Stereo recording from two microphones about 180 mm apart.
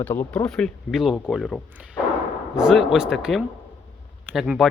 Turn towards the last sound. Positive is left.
turn(degrees=0)  # may be behind; listen again after turning